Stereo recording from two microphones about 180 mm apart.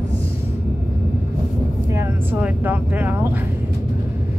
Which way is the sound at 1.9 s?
10° right (ahead or behind).